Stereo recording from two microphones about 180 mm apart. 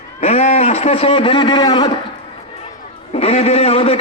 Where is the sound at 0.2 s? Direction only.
35° left (ahead or behind).